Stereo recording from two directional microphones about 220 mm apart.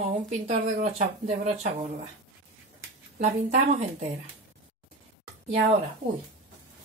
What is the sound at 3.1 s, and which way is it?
Speech, 35° right (ahead or behind).